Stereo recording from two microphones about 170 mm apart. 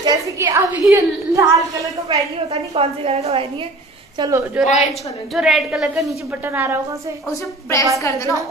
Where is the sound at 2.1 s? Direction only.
35° right (ahead or behind).